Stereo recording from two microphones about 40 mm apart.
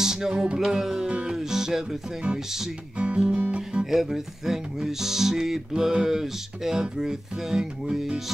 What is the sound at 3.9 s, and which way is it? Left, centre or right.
Speech, centre.